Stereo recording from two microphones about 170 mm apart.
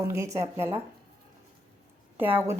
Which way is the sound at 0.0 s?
15° right (ahead or behind).